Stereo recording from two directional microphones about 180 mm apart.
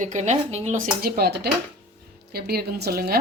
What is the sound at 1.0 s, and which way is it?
A woman's voice, 60° right (ahead or behind).